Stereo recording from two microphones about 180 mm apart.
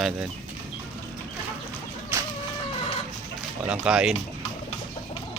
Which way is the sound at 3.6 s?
5° right (ahead or behind).